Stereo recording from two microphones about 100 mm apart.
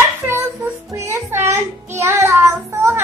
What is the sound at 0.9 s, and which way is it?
Child singing, 30° right (ahead or behind).